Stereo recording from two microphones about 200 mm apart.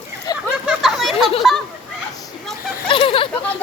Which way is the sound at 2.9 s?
25° left (ahead or behind).